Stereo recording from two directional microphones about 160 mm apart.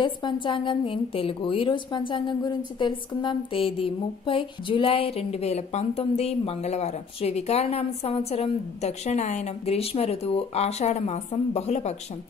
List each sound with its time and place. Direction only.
0.0 s a woman's voice: 30° left (ahead or behind)